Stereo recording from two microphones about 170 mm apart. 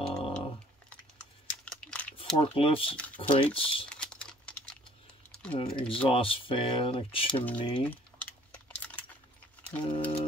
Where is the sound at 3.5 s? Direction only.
30° left (ahead or behind).